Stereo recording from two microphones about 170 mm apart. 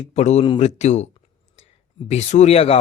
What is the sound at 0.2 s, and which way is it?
Speech, 40° left (ahead or behind).